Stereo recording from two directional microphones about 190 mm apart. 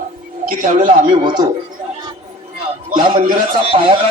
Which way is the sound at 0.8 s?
25° right (ahead or behind).